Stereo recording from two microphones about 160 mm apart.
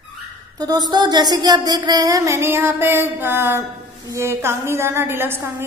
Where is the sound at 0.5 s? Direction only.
25° right (ahead or behind).